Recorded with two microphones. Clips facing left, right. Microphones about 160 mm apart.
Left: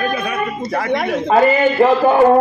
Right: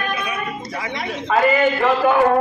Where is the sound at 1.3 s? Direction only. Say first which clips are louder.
Left 4 dB; 35° left (ahead or behind).